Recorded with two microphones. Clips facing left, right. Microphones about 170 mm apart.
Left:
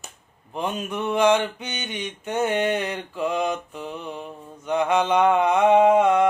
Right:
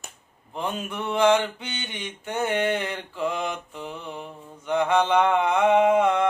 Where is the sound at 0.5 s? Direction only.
20° left (ahead or behind).